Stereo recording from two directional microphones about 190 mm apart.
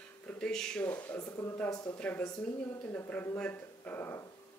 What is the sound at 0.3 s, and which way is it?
Speech, 5° left (ahead or behind).